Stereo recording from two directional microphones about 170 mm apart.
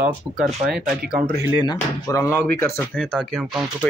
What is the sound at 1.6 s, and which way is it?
Speech, 20° left (ahead or behind).